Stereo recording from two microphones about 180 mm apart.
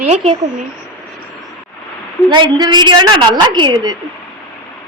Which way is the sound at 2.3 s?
25° right (ahead or behind).